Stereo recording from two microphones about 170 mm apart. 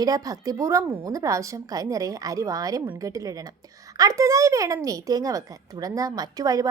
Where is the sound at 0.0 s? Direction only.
20° right (ahead or behind).